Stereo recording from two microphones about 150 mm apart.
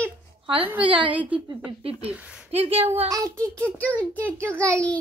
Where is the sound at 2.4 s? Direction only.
40° right (ahead or behind).